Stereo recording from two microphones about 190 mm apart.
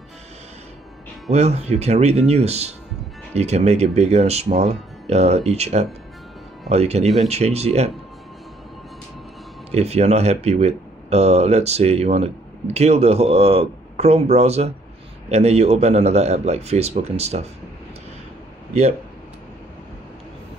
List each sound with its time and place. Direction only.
1.3 s speech: 35° right (ahead or behind)
9.7 s speech: 35° right (ahead or behind)
18.7 s speech: 35° right (ahead or behind)